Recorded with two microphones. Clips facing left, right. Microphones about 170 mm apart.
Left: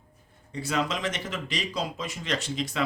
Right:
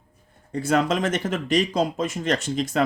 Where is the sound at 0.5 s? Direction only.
50° right (ahead or behind).